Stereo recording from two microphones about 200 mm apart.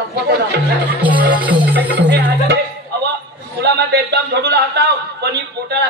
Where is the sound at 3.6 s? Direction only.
55° right (ahead or behind).